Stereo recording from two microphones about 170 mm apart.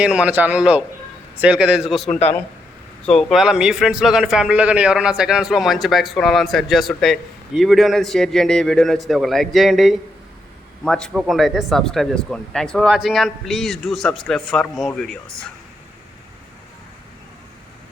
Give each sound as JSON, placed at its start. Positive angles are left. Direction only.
{"t": 0.0, "sound": "a man's voice", "side_deg": -5}